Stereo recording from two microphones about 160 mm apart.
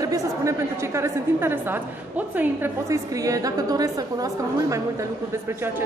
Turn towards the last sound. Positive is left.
turn(degrees=-20)  # may be behind; listen again after turning